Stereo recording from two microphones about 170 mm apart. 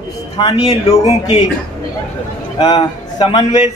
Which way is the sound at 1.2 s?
40° left (ahead or behind).